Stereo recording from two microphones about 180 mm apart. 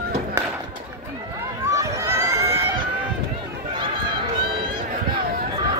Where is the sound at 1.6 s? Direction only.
15° right (ahead or behind).